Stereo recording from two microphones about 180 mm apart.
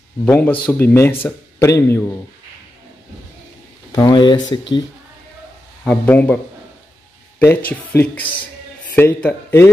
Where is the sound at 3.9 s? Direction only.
25° left (ahead or behind).